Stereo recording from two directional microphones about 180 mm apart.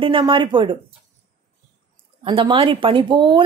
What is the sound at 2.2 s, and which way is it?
Speech, 25° right (ahead or behind).